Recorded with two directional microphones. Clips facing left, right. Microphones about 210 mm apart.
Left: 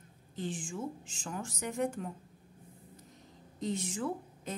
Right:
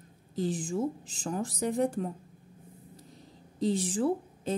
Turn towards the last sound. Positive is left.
turn(degrees=-35)  # may be behind; listen again after turning